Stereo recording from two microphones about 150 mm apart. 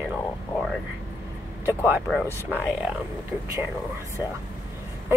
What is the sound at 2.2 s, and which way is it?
Speech, 15° left (ahead or behind).